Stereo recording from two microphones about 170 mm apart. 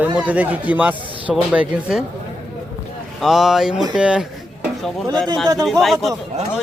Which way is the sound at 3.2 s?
Centre (ahead or behind).